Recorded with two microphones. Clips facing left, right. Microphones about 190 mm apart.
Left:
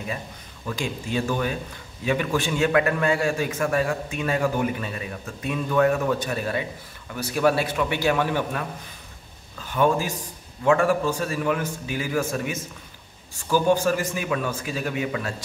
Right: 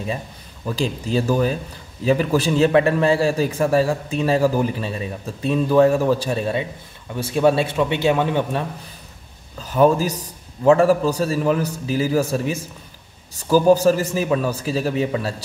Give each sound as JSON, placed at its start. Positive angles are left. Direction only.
{"t": 0.7, "sound": "a man's voice", "side_deg": -35}
{"t": 9.6, "sound": "a man's voice", "side_deg": -40}